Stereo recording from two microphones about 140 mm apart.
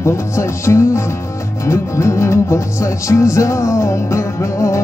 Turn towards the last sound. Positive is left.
turn(degrees=20)  # may be behind; listen again after turning